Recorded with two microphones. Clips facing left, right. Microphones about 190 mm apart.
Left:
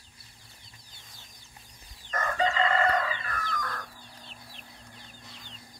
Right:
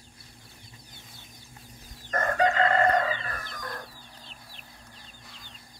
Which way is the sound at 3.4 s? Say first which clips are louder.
Left 3 dB; 20° right (ahead or behind).